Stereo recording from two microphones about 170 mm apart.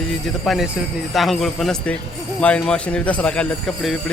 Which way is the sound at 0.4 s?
Centre (ahead or behind).